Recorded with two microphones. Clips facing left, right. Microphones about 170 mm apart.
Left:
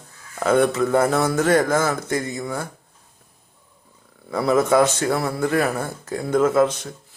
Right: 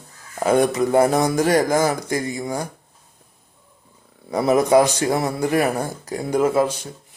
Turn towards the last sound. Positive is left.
turn(degrees=-10)  # may be behind; listen again after turning